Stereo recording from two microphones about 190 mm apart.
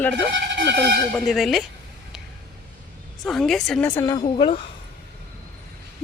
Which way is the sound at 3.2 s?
Centre (ahead or behind).